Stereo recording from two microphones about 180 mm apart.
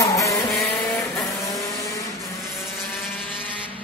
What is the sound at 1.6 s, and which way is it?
Vehicle, 20° left (ahead or behind).